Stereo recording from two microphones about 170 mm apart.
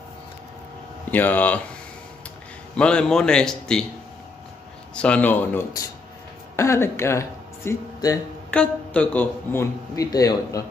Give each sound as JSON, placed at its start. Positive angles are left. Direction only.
{"t": 1.1, "sound": "speech", "side_deg": 10}
{"t": 2.7, "sound": "a man's voice", "side_deg": 5}
{"t": 4.9, "sound": "speech", "side_deg": 5}
{"t": 8.5, "sound": "speech", "side_deg": 5}